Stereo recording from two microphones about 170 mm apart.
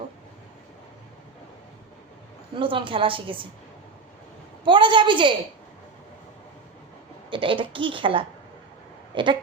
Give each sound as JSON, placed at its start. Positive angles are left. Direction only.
{"t": 2.6, "sound": "a woman's voice", "side_deg": -30}
{"t": 4.6, "sound": "a woman's voice", "side_deg": -30}
{"t": 7.3, "sound": "a woman's voice", "side_deg": -30}